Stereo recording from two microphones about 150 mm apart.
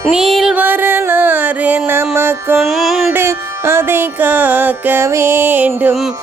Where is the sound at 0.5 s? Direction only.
10° right (ahead or behind).